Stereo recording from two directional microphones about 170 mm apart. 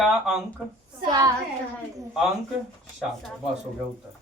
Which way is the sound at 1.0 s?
25° right (ahead or behind).